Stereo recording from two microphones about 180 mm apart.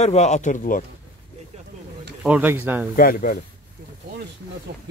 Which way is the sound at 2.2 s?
10° right (ahead or behind).